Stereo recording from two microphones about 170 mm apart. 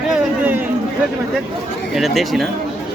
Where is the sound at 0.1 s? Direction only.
10° right (ahead or behind).